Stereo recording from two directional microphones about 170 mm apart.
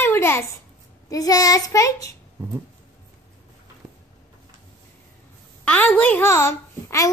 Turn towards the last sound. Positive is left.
turn(degrees=15)  # may be behind; listen again after turning